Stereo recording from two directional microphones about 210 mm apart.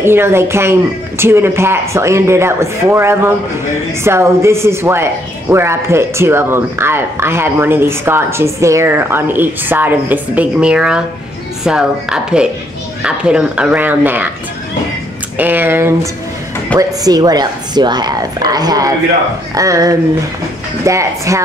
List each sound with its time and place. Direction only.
0.0 s speech: 10° right (ahead or behind)
15.3 s a woman's voice: 10° right (ahead or behind)